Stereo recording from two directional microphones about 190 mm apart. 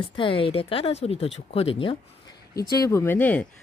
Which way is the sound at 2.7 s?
15° left (ahead or behind).